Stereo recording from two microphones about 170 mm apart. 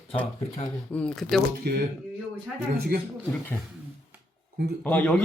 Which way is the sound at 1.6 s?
75° right (ahead or behind).